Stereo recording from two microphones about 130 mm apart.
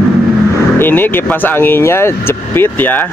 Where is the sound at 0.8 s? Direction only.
15° left (ahead or behind).